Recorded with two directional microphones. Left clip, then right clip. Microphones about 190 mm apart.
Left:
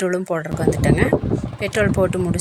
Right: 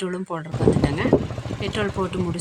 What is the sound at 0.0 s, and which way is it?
Speech, 20° left (ahead or behind).